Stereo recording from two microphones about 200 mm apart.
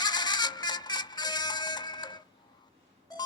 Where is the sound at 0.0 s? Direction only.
20° left (ahead or behind).